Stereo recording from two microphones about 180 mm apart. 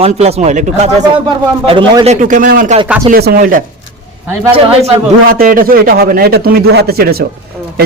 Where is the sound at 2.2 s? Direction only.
45° right (ahead or behind).